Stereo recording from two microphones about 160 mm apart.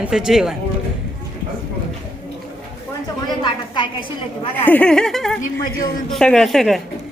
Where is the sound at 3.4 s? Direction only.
30° left (ahead or behind).